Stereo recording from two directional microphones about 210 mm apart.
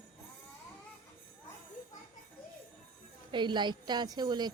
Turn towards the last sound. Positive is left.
turn(degrees=-20)  # may be behind; listen again after turning